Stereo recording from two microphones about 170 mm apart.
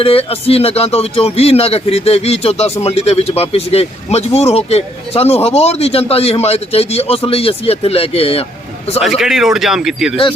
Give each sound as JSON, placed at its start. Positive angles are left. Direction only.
{"t": 0.0, "sound": "speech", "side_deg": 35}
{"t": 9.0, "sound": "speech", "side_deg": 0}